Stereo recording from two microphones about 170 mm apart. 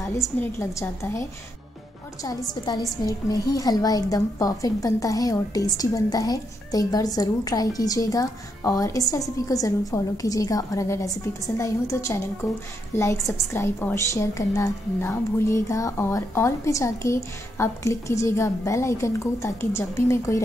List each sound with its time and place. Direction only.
0.4 s a woman's voice: 15° left (ahead or behind)
2.2 s a woman's voice: 20° left (ahead or behind)